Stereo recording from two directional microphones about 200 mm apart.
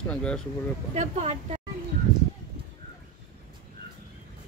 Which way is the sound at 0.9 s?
35° right (ahead or behind).